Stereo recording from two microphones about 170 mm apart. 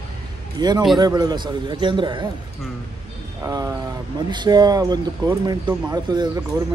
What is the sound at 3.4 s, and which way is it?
Speech, 20° right (ahead or behind).